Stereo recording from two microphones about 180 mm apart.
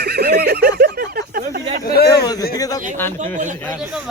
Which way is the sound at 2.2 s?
20° left (ahead or behind).